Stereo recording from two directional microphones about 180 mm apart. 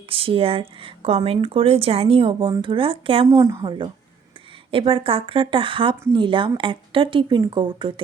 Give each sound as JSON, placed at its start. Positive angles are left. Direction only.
{"t": 0.1, "sound": "speech", "side_deg": -30}
{"t": 3.2, "sound": "speech", "side_deg": -20}